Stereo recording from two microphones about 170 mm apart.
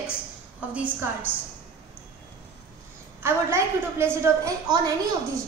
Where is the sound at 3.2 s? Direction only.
15° right (ahead or behind).